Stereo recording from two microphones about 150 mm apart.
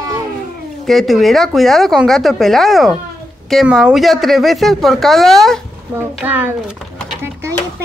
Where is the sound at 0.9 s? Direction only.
Centre (ahead or behind).